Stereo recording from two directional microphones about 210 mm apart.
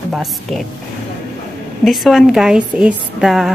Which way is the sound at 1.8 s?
Centre (ahead or behind).